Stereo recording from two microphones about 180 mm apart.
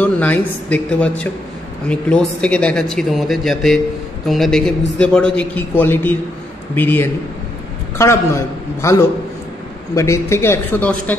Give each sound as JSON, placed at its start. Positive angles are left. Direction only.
{"t": 0.0, "sound": "speech", "side_deg": 10}